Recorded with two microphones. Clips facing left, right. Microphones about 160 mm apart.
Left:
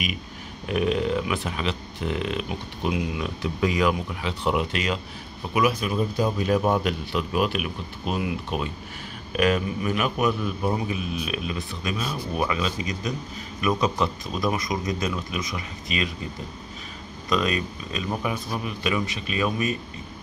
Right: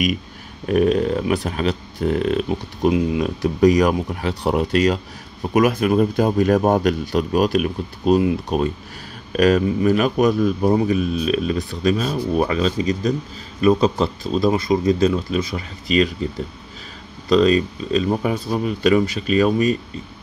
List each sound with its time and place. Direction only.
0.7 s speech: 45° right (ahead or behind)
5.5 s a man's voice: 50° right (ahead or behind); by 16.1 s 35° right (ahead or behind)
17.3 s speech: 30° right (ahead or behind)